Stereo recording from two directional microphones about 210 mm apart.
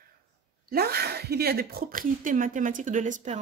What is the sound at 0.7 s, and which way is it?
Speech, 50° right (ahead or behind).